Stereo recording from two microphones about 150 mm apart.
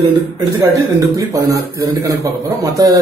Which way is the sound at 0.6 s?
20° right (ahead or behind).